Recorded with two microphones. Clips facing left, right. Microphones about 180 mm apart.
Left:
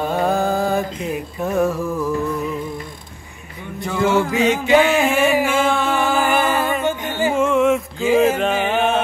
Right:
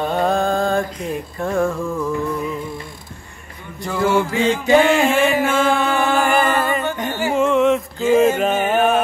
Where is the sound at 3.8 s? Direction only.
Centre (ahead or behind).